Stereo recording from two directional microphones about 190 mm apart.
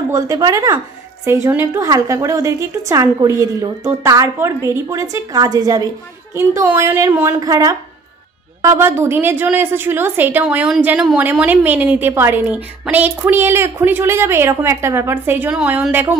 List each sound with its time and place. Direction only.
0.1 s a woman's voice: 20° right (ahead or behind)